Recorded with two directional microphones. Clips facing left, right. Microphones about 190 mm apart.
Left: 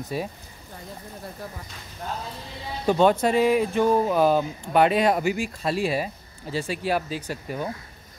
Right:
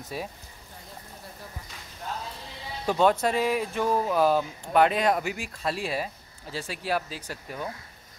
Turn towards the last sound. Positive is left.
turn(degrees=0)  # may be behind; listen again after turning